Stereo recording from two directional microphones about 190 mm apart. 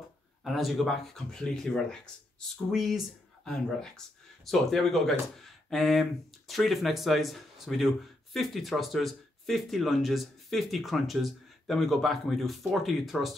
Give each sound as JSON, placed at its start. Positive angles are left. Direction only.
{"t": 0.4, "sound": "speech", "side_deg": 0}